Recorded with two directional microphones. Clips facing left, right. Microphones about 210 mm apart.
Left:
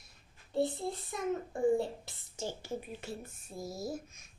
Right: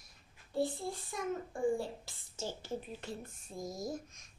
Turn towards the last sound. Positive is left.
turn(degrees=5)  # may be behind; listen again after turning